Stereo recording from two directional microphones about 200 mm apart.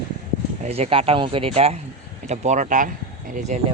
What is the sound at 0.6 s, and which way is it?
Speech, 30° right (ahead or behind).